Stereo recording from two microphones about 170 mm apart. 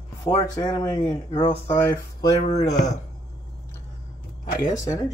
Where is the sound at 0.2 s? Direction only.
25° left (ahead or behind).